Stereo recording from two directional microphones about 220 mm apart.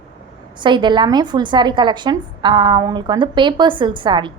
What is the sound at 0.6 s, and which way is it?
A woman's voice, 20° right (ahead or behind).